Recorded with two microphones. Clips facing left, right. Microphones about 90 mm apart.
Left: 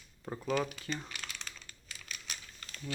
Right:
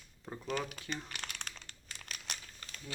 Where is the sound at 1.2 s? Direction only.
30° right (ahead or behind).